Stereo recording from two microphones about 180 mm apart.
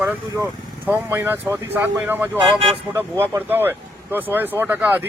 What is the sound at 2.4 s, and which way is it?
Speech, 25° right (ahead or behind).